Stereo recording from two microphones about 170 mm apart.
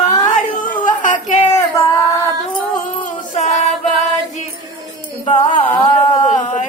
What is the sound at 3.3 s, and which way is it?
Music, 45° left (ahead or behind).